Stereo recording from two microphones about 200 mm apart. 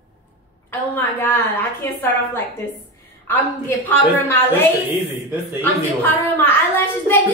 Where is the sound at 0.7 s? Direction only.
10° left (ahead or behind).